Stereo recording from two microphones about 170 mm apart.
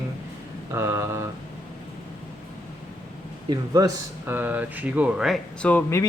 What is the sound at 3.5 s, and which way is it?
Speech, 20° right (ahead or behind).